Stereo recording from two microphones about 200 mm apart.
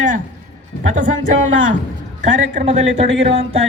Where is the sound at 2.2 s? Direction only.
35° right (ahead or behind).